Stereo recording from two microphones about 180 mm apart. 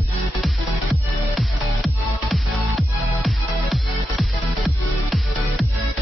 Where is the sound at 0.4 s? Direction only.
Centre (ahead or behind).